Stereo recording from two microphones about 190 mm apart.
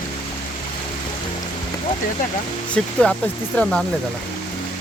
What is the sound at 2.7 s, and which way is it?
Speech, 5° left (ahead or behind).